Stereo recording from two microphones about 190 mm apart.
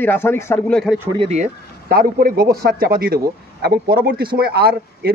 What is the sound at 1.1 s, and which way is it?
Speech, 30° right (ahead or behind).